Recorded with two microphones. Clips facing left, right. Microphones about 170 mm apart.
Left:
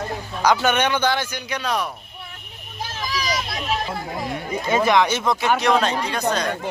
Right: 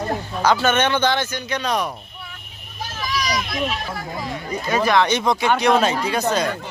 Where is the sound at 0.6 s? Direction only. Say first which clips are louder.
Right 1 dB; 10° left (ahead or behind).